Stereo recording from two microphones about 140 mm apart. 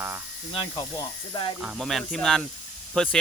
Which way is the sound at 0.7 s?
35° left (ahead or behind).